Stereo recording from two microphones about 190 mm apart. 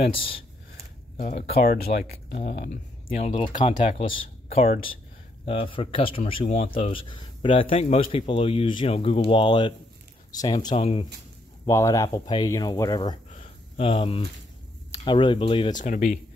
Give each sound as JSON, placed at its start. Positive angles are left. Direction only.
{"t": 0.1, "sound": "speech", "side_deg": 30}
{"t": 1.5, "sound": "speech", "side_deg": 55}
{"t": 2.7, "sound": "speech", "side_deg": 30}
{"t": 5.4, "sound": "speech", "side_deg": 30}
{"t": 11.6, "sound": "speech", "side_deg": 15}
{"t": 13.3, "sound": "a sound", "side_deg": 35}
{"t": 15.0, "sound": "speech", "side_deg": 25}
{"t": 15.8, "sound": "speech", "side_deg": 45}